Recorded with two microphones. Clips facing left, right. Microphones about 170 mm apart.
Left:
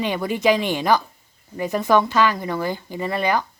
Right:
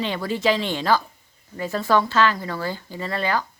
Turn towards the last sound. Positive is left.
turn(degrees=15)  # may be behind; listen again after turning